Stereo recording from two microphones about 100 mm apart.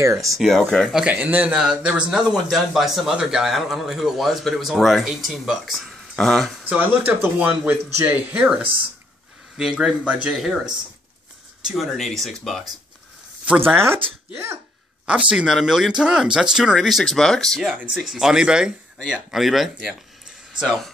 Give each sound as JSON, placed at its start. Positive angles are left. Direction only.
{"t": 0.0, "sound": "speech", "side_deg": -35}
{"t": 0.4, "sound": "a man's voice", "side_deg": 5}
{"t": 1.1, "sound": "a man's voice", "side_deg": -15}
{"t": 7.1, "sound": "speech", "side_deg": -20}
{"t": 9.6, "sound": "a man's voice", "side_deg": -5}
{"t": 13.7, "sound": "sneeze", "side_deg": -25}
{"t": 15.0, "sound": "a man's voice", "side_deg": -10}